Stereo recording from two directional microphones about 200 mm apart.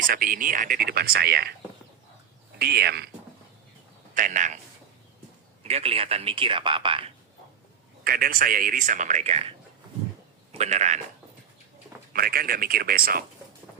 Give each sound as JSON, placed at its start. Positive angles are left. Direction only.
{"t": 0.0, "sound": "speech", "side_deg": -45}
{"t": 2.6, "sound": "speech", "side_deg": -55}
{"t": 4.1, "sound": "speech", "side_deg": -40}
{"t": 5.6, "sound": "speech", "side_deg": -30}
{"t": 8.0, "sound": "speech", "side_deg": -45}
{"t": 10.6, "sound": "speech", "side_deg": -35}
{"t": 12.1, "sound": "speech", "side_deg": -50}